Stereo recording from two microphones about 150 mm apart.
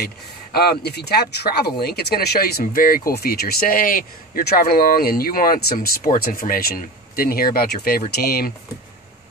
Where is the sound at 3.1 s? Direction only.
90° left.